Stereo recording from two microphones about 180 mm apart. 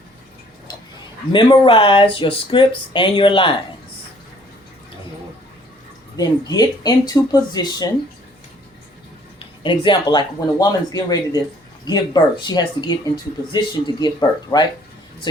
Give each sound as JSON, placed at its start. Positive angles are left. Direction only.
{"t": 1.3, "sound": "speech", "side_deg": 25}
{"t": 6.1, "sound": "speech", "side_deg": 20}
{"t": 9.4, "sound": "speech", "side_deg": 25}